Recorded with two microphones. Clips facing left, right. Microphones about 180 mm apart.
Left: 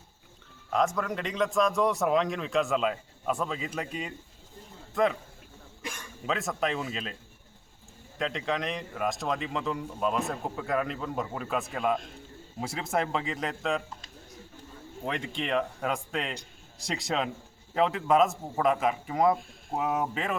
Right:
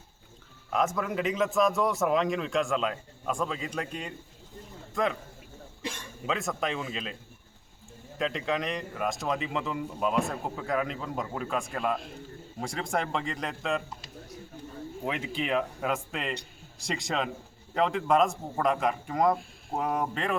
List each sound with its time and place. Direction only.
0.7 s speech: centre (ahead or behind)
5.8 s a sound: 30° right (ahead or behind)
6.2 s speech: centre (ahead or behind)
8.2 s speech: centre (ahead or behind)